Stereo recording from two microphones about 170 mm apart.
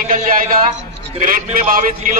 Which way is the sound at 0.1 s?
55° right (ahead or behind).